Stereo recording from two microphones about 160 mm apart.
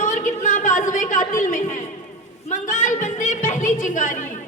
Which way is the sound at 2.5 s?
50° left (ahead or behind).